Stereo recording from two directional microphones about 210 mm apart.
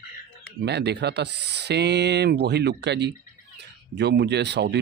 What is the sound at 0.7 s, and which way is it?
Speech, 55° right (ahead or behind).